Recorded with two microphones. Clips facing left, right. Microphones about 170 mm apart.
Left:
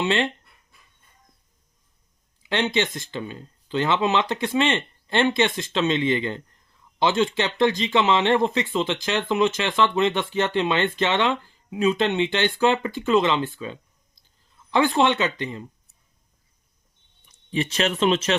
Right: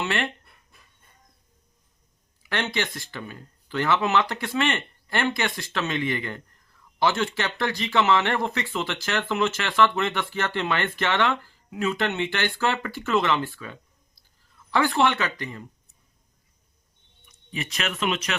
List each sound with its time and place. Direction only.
0.0 s speech: 20° left (ahead or behind)
2.4 s speech: 20° left (ahead or behind)
17.2 s speech: 30° left (ahead or behind)